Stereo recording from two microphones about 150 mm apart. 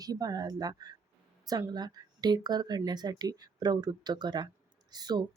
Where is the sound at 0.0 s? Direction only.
25° right (ahead or behind).